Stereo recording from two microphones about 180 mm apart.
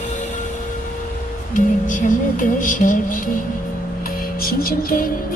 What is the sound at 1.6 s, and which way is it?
Music, 45° left (ahead or behind).